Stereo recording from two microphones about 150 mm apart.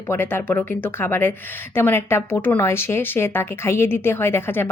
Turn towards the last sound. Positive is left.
turn(degrees=15)  # may be behind; listen again after turning